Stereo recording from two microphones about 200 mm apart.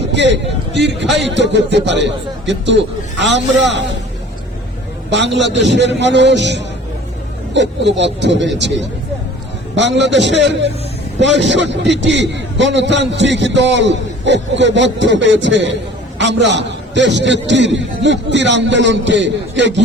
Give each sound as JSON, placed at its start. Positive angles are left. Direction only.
{"t": 0.1, "sound": "a man's voice", "side_deg": -60}
{"t": 5.1, "sound": "a man's voice", "side_deg": -60}